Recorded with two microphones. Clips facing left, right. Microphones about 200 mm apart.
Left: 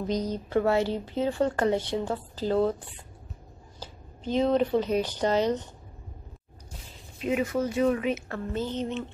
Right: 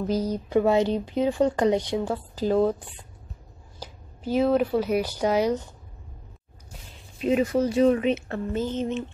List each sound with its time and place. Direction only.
0.1 s speech: 10° right (ahead or behind)
3.8 s speech: 10° right (ahead or behind)
7.2 s speech: 35° right (ahead or behind)
8.5 s speech: 15° right (ahead or behind)